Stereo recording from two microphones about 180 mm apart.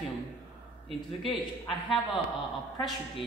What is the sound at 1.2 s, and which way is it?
Speech, 30° left (ahead or behind).